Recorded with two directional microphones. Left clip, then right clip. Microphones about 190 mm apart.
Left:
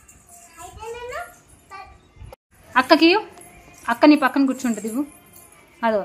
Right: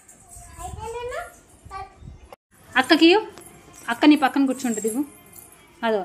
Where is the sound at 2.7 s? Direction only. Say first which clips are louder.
Left 1 dB; 15° left (ahead or behind).